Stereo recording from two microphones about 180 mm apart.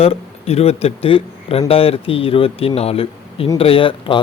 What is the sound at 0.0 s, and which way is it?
A man's voice, 35° left (ahead or behind).